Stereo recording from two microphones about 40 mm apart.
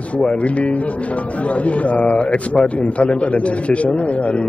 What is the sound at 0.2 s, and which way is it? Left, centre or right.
Speech, left.